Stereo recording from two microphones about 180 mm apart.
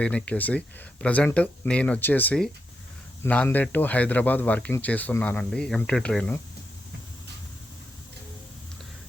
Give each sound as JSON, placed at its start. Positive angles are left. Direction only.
{"t": 0.0, "sound": "speech", "side_deg": 5}